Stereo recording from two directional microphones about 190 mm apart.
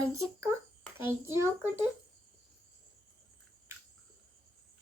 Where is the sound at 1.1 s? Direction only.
15° right (ahead or behind).